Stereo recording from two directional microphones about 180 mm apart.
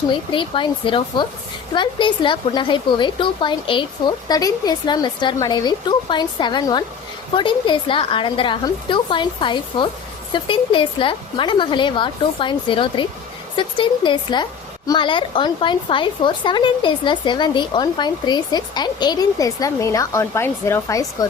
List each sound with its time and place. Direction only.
0.1 s speech: 25° left (ahead or behind)